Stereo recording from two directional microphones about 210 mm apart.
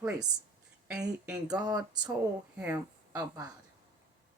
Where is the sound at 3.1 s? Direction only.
15° right (ahead or behind).